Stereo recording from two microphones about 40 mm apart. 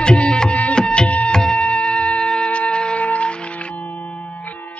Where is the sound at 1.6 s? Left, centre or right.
Left.